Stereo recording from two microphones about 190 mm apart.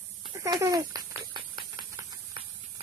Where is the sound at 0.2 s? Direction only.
25° right (ahead or behind).